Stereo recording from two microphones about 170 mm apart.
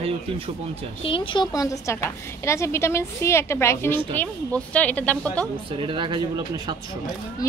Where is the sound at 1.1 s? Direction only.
30° left (ahead or behind); by 5.4 s 10° left (ahead or behind).